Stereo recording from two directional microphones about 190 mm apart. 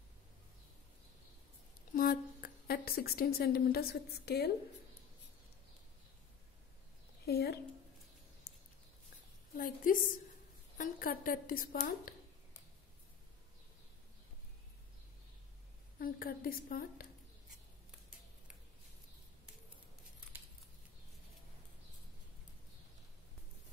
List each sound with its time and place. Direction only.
2.0 s a woman's voice: 50° left (ahead or behind)
7.2 s a woman's voice: 60° left (ahead or behind)
9.6 s a woman's voice: 50° left (ahead or behind)
16.0 s a woman's voice: 50° left (ahead or behind)